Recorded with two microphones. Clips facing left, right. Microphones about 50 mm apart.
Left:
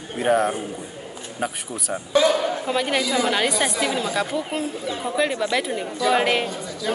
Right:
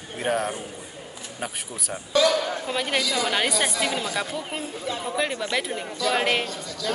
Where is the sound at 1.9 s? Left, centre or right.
Left.